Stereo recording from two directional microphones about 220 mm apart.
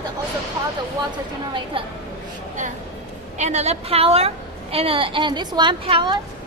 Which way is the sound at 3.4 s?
30° right (ahead or behind).